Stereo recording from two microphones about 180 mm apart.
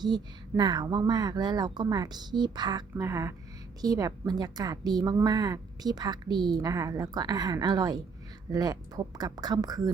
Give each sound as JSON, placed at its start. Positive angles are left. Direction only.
{"t": 0.0, "sound": "a woman's voice", "side_deg": -25}